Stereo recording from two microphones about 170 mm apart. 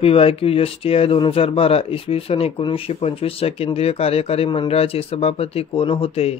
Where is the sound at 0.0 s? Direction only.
35° left (ahead or behind).